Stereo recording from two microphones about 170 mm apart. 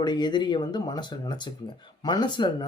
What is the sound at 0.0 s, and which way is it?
Speech, 25° left (ahead or behind).